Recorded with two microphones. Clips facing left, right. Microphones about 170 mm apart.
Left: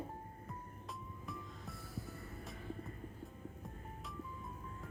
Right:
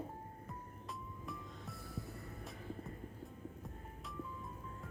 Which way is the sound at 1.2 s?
Centre (ahead or behind).